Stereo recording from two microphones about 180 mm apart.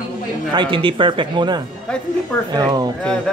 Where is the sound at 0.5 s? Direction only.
25° right (ahead or behind).